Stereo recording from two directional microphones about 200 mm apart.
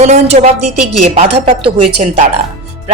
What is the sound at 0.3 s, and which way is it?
Speech, 40° right (ahead or behind).